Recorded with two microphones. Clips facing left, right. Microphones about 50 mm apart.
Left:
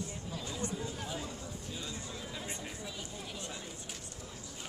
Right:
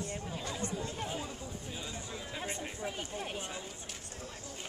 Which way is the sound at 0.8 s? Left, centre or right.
Right.